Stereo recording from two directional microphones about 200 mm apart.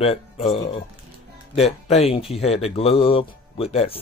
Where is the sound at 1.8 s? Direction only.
30° left (ahead or behind).